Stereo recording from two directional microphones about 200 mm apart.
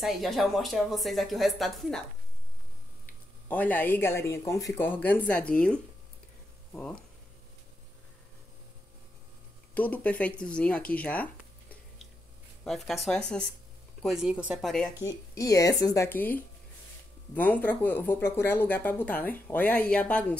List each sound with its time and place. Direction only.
0.0 s a woman's voice: centre (ahead or behind)
3.4 s speech: 10° left (ahead or behind)
9.8 s speech: 5° left (ahead or behind)
12.6 s a woman's voice: centre (ahead or behind)
15.0 s speech: 15° left (ahead or behind)